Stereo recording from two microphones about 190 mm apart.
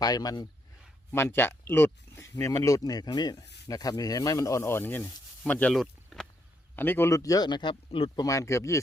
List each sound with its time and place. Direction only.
0.0 s speech: 20° left (ahead or behind)